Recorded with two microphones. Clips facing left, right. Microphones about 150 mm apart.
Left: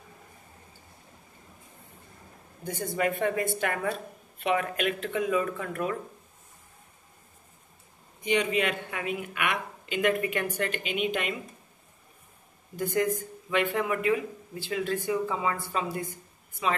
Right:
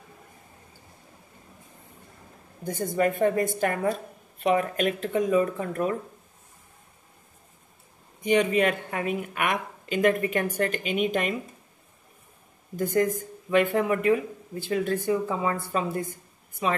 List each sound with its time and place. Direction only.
2.6 s a woman's voice: 45° right (ahead or behind)
8.2 s speech: 45° right (ahead or behind)
12.7 s speech: 45° right (ahead or behind)